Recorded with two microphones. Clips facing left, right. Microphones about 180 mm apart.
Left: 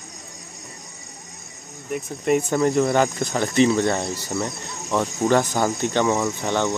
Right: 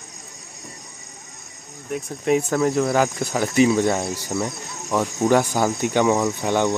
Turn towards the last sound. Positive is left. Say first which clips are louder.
# right 2 dB
turn(degrees=-15)  # may be behind; listen again after turning